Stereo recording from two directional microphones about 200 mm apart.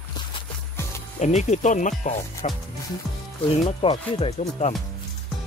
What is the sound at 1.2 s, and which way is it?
Speech, 35° left (ahead or behind).